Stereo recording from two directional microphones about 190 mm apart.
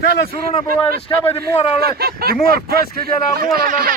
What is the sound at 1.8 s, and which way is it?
Speech, 55° right (ahead or behind).